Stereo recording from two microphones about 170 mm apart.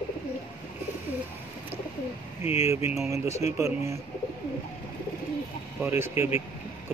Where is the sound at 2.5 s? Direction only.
15° right (ahead or behind).